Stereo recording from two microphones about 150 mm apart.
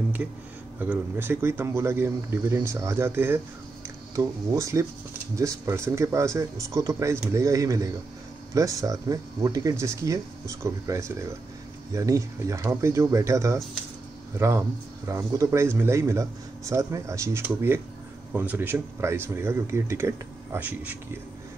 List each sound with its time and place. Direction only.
0.7 s speech: 15° right (ahead or behind)